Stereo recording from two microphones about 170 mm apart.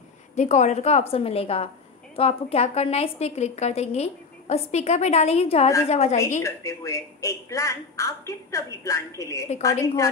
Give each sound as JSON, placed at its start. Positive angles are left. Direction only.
{"t": 0.4, "sound": "a woman's voice", "side_deg": 40}
{"t": 6.4, "sound": "a woman's voice", "side_deg": 20}